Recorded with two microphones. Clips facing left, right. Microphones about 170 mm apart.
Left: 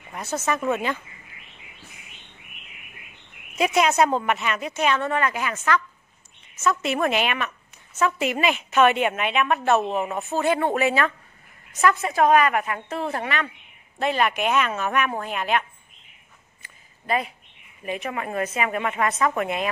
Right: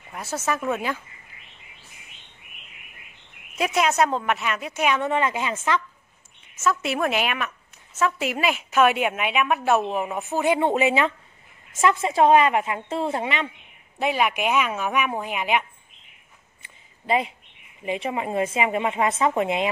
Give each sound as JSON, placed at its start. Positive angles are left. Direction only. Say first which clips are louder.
{"t": 0.1, "sound": "a woman's voice", "louder": "left 1 dB", "side_deg": -5}
{"t": 3.5, "sound": "a woman's voice", "louder": "left 2 dB", "side_deg": 0}
{"t": 6.6, "sound": "a woman's voice", "louder": "left 1 dB", "side_deg": -5}
{"t": 13.9, "sound": "a woman's voice", "louder": "even", "side_deg": -10}
{"t": 17.0, "sound": "a woman's voice", "louder": "right 2 dB", "side_deg": -20}